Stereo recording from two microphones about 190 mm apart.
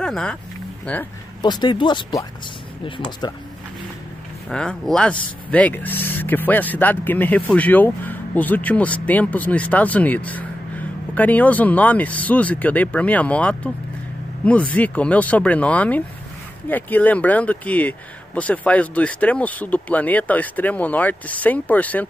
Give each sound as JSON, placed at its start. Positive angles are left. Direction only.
{"t": 0.0, "sound": "speech", "side_deg": 5}
{"t": 1.4, "sound": "speech", "side_deg": 20}
{"t": 4.5, "sound": "speech", "side_deg": 5}